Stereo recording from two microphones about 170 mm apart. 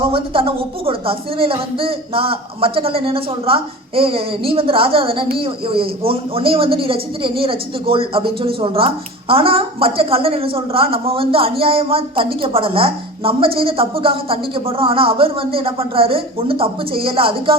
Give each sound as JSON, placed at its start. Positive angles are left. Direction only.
{"t": 0.1, "sound": "speech", "side_deg": -35}